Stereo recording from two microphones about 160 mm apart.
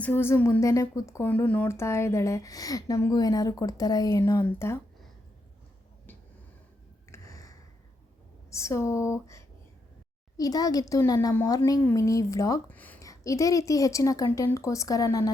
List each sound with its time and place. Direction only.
0.0 s a child's voice: 15° left (ahead or behind)
7.1 s a sound: 20° left (ahead or behind)
8.4 s a child's voice: 20° left (ahead or behind)